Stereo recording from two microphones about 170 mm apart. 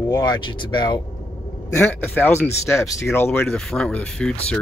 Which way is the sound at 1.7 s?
10° left (ahead or behind).